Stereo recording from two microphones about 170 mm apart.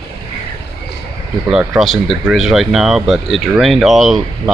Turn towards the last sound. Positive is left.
turn(degrees=0)  # may be behind; listen again after turning